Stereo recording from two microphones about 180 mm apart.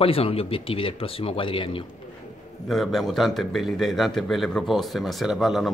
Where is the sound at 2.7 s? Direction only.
Centre (ahead or behind).